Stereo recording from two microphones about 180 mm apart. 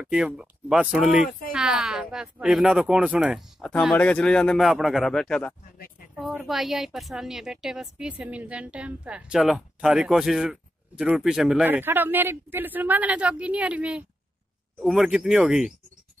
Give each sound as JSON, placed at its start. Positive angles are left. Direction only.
{"t": 0.0, "sound": "a woman's voice", "side_deg": -5}